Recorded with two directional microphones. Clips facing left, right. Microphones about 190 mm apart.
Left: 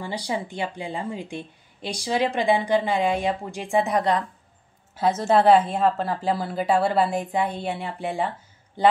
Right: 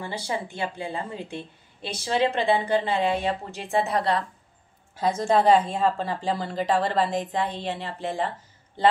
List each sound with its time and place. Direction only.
0.0 s a woman's voice: 15° left (ahead or behind)
5.0 s a woman's voice: 5° left (ahead or behind)